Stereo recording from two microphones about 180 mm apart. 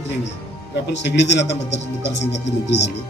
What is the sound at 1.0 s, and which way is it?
Speech, 75° left (ahead or behind).